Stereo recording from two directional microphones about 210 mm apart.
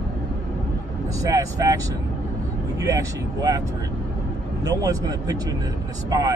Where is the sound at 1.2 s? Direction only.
15° right (ahead or behind).